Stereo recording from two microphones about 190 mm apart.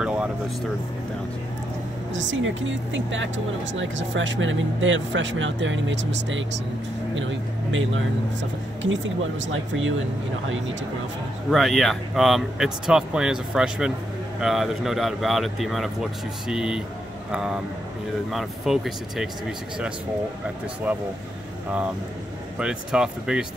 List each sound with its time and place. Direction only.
0.0 s vehicle: 5° right (ahead or behind)
2.1 s speech: 80° right
11.5 s speech: centre (ahead or behind)
22.6 s speech: 5° right (ahead or behind)